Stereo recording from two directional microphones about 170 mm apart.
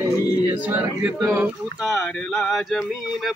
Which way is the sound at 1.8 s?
Centre (ahead or behind).